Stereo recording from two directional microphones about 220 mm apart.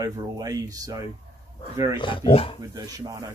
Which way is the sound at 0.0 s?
15° right (ahead or behind).